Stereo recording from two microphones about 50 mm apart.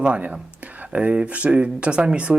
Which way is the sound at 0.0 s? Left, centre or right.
Right.